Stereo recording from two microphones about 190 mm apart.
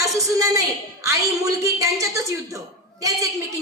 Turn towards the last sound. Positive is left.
turn(degrees=-15)  # may be behind; listen again after turning